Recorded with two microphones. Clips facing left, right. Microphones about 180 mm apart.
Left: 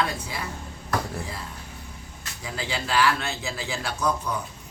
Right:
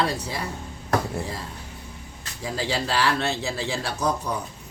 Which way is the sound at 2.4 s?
35° right (ahead or behind).